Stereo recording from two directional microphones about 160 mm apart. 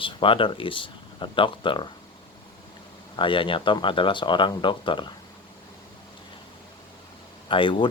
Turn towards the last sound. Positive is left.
turn(degrees=30)  # may be behind; listen again after turning